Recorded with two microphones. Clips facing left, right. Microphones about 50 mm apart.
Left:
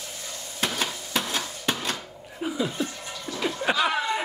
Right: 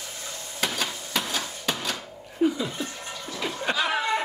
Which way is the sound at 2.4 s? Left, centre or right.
Centre.